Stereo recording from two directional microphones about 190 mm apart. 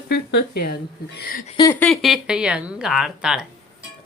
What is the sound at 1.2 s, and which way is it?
Speech, 50° left (ahead or behind).